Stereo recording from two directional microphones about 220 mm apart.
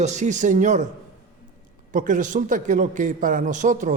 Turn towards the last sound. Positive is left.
turn(degrees=-35)  # may be behind; listen again after turning